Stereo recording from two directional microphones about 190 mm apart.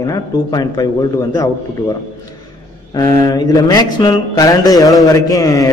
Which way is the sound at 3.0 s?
20° left (ahead or behind).